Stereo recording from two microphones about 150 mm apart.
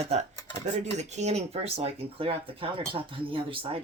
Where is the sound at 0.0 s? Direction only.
45° right (ahead or behind).